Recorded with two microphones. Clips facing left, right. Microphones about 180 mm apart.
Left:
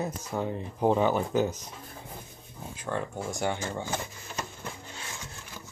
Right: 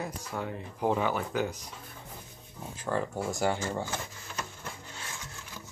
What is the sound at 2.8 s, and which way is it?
Speech, 5° right (ahead or behind).